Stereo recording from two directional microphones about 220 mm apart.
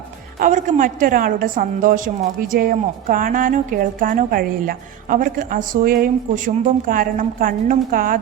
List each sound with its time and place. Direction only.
0.3 s a woman's voice: 35° right (ahead or behind)